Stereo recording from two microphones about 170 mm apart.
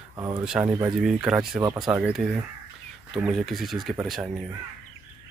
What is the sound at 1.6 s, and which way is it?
Speech, 25° right (ahead or behind).